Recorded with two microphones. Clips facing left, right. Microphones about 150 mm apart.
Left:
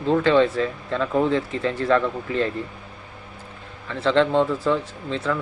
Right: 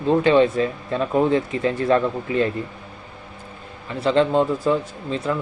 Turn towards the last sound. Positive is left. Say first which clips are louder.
# right 1 dB
turn(degrees=-15)  # may be behind; listen again after turning